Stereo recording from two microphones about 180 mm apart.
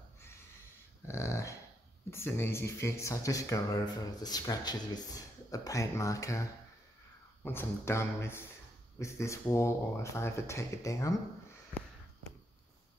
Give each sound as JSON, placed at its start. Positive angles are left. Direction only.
{"t": 1.0, "sound": "dog", "side_deg": 15}
{"t": 2.0, "sound": "speech", "side_deg": 15}
{"t": 7.4, "sound": "speech", "side_deg": 15}